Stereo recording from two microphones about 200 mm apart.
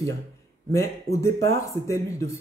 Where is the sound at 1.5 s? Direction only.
15° left (ahead or behind).